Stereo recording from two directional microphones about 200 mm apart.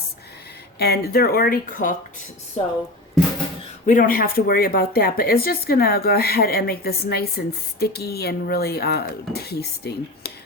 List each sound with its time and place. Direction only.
0.8 s speech: 50° left (ahead or behind)
3.8 s speech: 40° left (ahead or behind)